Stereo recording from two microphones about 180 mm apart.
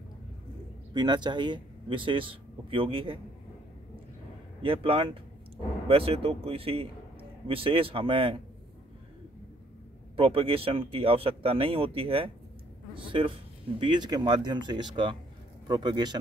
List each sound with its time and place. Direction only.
0.9 s speech: 25° right (ahead or behind)
4.6 s speech: 30° right (ahead or behind)
10.1 s speech: 30° right (ahead or behind)